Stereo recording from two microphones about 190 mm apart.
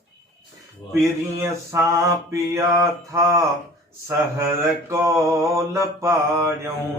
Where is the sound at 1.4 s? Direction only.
15° right (ahead or behind).